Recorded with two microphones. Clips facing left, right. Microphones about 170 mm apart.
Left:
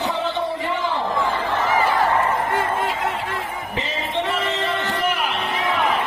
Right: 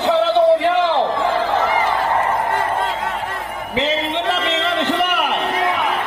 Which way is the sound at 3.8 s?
90° right.